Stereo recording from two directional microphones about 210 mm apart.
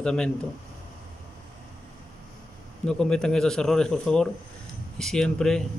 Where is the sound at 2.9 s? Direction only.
5° left (ahead or behind).